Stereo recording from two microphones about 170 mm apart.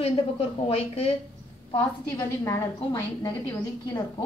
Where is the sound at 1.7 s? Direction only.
20° left (ahead or behind).